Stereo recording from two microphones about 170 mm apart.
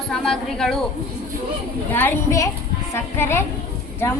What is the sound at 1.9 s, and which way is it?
A woman's voice, 10° left (ahead or behind).